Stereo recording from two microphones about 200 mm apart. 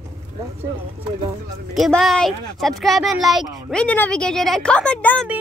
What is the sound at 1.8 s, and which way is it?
Speech, centre (ahead or behind).